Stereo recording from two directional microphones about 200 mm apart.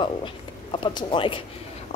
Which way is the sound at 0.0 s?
25° left (ahead or behind).